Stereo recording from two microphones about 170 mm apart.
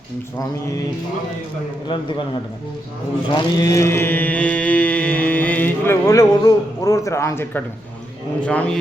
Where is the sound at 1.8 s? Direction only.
30° left (ahead or behind).